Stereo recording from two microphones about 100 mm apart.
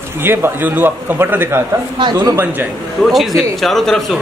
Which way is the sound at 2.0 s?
45° right (ahead or behind).